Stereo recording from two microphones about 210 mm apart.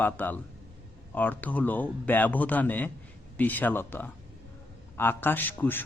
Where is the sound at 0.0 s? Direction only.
10° left (ahead or behind).